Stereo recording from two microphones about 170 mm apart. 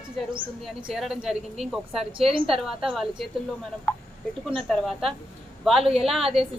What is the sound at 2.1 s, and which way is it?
Speech, 30° right (ahead or behind).